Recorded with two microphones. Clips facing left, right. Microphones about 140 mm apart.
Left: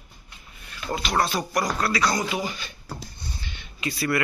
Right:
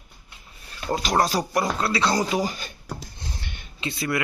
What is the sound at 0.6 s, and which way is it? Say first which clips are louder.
Speech: right 3 dB; 40° right (ahead or behind).